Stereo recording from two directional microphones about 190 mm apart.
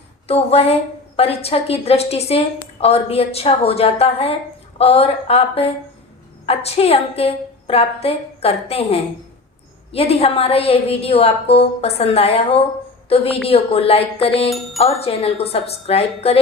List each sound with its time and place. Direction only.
0.3 s a woman's voice: 30° left (ahead or behind)